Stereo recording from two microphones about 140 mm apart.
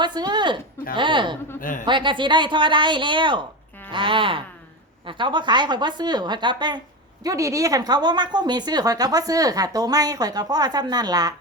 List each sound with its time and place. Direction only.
0.0 s a woman's voice: 30° right (ahead or behind)